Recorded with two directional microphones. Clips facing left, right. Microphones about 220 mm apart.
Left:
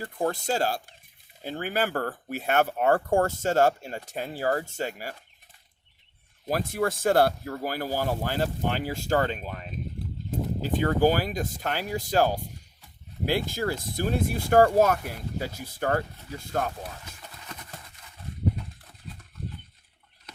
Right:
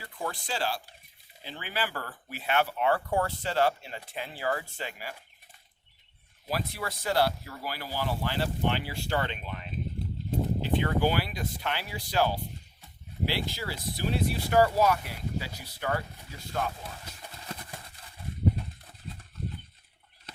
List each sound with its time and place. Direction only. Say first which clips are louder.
0.0 s speech: left 8 dB; 45° left (ahead or behind)
6.5 s speech: left 7 dB; 50° left (ahead or behind)
17.1 s a sound: right 2 dB; 30° right (ahead or behind)